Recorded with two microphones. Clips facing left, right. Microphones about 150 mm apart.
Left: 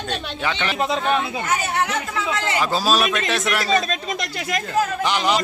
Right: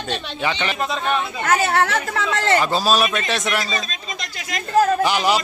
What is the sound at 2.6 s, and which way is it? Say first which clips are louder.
Speech: right 1 dB; centre (ahead or behind).